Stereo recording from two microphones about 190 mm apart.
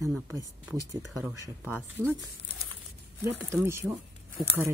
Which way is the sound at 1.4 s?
10° right (ahead or behind).